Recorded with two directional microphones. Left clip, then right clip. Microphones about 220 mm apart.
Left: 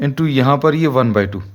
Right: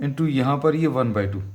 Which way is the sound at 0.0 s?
40° left (ahead or behind).